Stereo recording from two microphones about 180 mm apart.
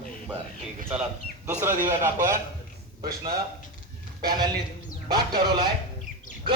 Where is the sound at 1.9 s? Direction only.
45° right (ahead or behind).